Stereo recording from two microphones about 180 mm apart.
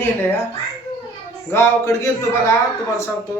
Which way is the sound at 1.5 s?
15° left (ahead or behind).